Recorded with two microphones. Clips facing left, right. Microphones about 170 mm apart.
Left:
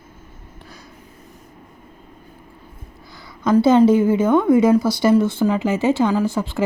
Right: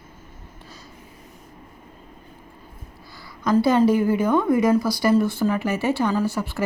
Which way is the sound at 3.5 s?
25° left (ahead or behind).